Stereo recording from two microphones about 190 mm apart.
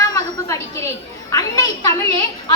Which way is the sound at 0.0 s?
20° left (ahead or behind).